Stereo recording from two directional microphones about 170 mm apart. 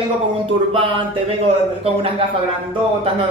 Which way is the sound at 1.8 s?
35° right (ahead or behind).